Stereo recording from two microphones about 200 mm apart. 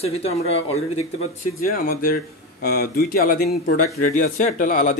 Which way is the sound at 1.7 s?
45° left (ahead or behind).